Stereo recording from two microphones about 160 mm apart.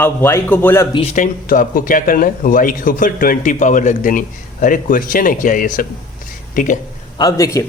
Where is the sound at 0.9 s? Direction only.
45° left (ahead or behind).